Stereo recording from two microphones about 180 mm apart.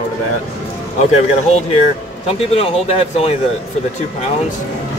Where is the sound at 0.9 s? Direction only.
40° left (ahead or behind).